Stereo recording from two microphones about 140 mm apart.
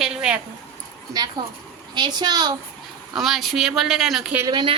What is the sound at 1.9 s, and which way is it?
Speech, 30° right (ahead or behind).